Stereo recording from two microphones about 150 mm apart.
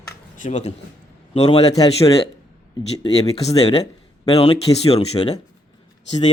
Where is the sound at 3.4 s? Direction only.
45° left (ahead or behind).